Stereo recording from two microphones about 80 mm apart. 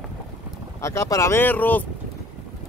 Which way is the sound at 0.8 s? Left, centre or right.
Left.